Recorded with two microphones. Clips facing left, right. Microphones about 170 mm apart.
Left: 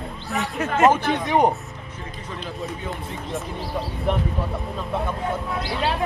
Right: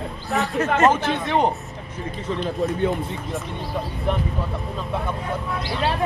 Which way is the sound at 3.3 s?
Centre (ahead or behind).